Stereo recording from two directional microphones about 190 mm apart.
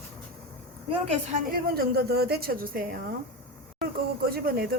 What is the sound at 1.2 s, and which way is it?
A woman's voice, 45° right (ahead or behind).